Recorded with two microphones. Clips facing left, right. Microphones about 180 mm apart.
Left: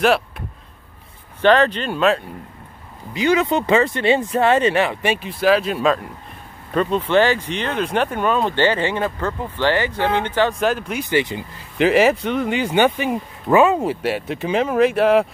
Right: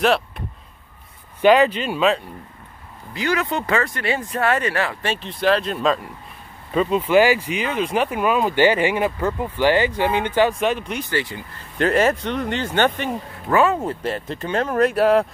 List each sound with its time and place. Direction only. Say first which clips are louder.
1.4 s speech: even; 10° right (ahead or behind)
3.1 s speech: left 5 dB; 20° left (ahead or behind); by 10.5 s 15° right (ahead or behind)
10.6 s speech: left 1 dB; centre (ahead or behind)
11.1 s speech: left 7 dB; 20° left (ahead or behind)
11.8 s speech: left 3 dB; 10° left (ahead or behind)